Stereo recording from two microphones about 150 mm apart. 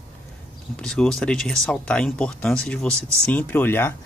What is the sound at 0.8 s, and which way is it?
Speech, 5° left (ahead or behind).